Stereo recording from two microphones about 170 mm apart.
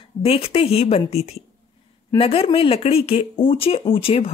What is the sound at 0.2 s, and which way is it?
Speech, 35° left (ahead or behind).